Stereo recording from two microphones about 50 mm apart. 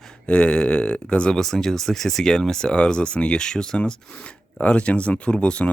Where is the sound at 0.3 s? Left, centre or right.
Left.